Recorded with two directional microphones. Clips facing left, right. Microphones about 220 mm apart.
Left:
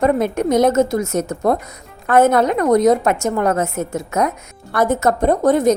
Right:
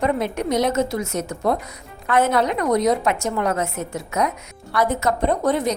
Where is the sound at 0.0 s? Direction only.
45° left (ahead or behind).